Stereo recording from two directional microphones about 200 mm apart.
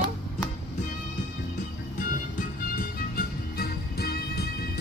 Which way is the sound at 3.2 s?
50° left (ahead or behind).